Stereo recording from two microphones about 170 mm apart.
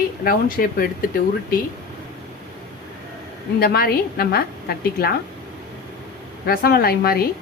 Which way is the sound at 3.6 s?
60° left (ahead or behind).